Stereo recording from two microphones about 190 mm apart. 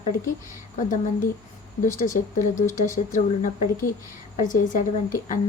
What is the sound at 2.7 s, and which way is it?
A woman's voice, 40° left (ahead or behind).